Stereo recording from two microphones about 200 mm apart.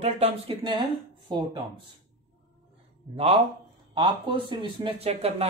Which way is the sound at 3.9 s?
25° right (ahead or behind).